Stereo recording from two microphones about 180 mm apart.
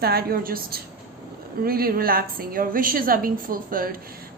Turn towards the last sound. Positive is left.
turn(degrees=-50)  # may be behind; listen again after turning